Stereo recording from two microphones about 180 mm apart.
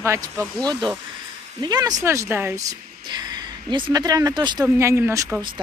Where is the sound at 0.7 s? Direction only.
25° right (ahead or behind).